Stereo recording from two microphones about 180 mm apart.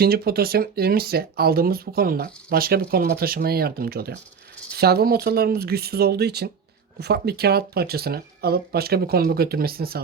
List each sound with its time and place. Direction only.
0.0 s speech: 60° right (ahead or behind)